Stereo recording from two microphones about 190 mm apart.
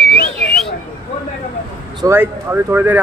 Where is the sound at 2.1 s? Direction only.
10° right (ahead or behind).